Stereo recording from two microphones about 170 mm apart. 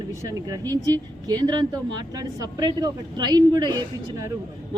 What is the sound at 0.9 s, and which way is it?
A woman's voice, 25° right (ahead or behind).